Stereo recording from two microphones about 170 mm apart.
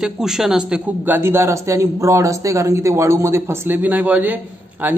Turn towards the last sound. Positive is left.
turn(degrees=-10)  # may be behind; listen again after turning